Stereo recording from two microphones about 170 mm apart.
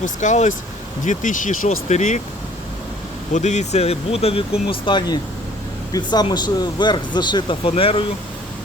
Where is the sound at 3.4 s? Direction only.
45° left (ahead or behind).